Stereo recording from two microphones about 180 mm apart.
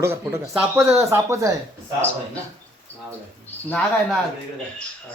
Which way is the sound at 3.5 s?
5° left (ahead or behind).